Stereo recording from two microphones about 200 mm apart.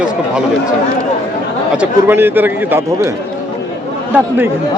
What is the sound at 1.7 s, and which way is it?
A man's voice, 10° right (ahead or behind).